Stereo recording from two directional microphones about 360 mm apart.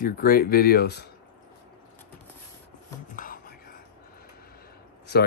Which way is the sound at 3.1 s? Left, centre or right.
Left.